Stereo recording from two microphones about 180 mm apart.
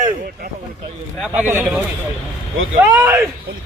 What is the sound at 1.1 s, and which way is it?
Speech, 5° right (ahead or behind).